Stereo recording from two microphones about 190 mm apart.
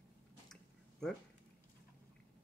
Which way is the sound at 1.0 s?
5° left (ahead or behind).